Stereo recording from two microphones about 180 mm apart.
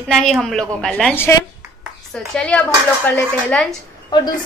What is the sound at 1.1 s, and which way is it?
A woman's voice, 15° left (ahead or behind).